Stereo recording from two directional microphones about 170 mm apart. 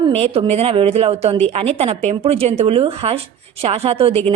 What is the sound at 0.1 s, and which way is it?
A woman's voice, 35° right (ahead or behind).